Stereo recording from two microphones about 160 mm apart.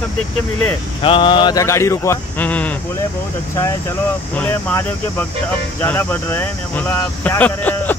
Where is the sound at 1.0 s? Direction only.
30° left (ahead or behind); by 2.7 s 10° left (ahead or behind).